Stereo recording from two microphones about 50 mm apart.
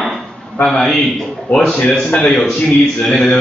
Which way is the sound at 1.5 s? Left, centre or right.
Left.